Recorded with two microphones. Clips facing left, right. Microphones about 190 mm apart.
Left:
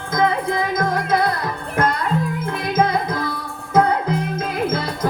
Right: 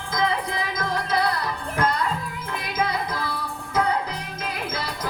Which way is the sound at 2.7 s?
50° left (ahead or behind).